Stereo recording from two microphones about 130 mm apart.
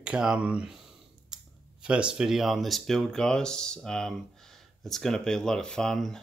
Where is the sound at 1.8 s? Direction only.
5° right (ahead or behind).